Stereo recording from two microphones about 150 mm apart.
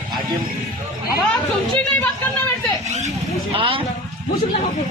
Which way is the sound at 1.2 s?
10° left (ahead or behind).